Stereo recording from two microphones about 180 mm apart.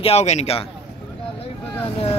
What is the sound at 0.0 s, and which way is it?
Speech, 35° left (ahead or behind).